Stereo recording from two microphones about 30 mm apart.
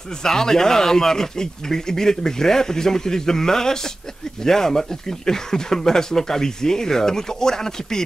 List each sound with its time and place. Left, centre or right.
0.2 s speech: centre